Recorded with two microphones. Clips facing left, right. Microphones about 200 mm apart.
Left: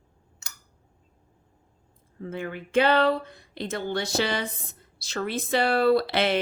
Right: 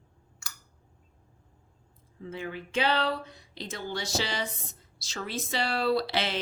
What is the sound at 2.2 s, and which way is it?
Speech, 55° left (ahead or behind).